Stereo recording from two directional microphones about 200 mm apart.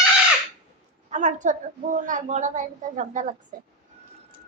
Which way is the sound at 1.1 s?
40° right (ahead or behind).